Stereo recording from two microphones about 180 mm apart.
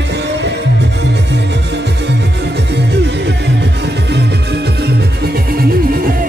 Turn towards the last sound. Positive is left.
turn(degrees=-55)  # may be behind; listen again after turning